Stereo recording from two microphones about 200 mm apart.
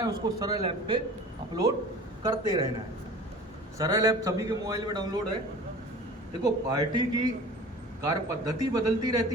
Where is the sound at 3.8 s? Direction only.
15° right (ahead or behind).